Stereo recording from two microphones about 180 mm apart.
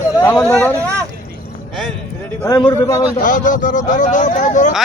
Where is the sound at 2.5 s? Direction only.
25° left (ahead or behind).